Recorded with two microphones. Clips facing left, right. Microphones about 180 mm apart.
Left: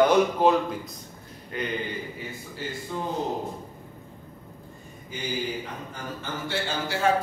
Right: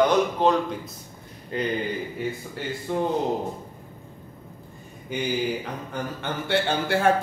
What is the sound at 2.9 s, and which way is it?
Speech, 65° right (ahead or behind).